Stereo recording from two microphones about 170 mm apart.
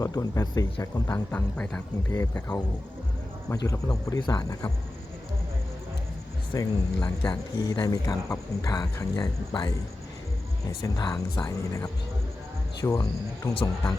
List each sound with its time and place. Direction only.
0.0 s speech: 20° left (ahead or behind)
1.3 s speech: 10° left (ahead or behind)
6.5 s speech: 25° left (ahead or behind)
10.8 s speech: 20° left (ahead or behind)